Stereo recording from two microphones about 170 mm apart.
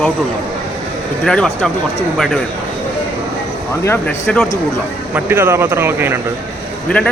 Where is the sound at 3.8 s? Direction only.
10° left (ahead or behind).